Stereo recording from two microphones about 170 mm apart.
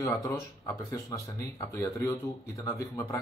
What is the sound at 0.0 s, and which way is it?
Speech, 20° left (ahead or behind).